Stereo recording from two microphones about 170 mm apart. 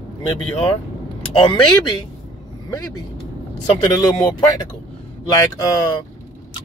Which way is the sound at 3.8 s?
25° left (ahead or behind).